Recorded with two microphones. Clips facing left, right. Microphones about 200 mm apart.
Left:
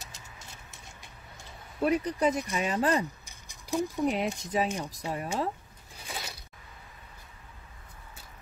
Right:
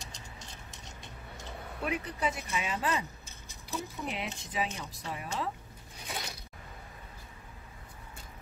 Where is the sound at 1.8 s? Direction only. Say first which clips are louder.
Left 8 dB; 40° left (ahead or behind).